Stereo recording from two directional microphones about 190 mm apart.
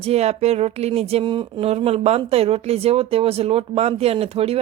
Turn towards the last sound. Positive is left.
turn(degrees=-30)  # may be behind; listen again after turning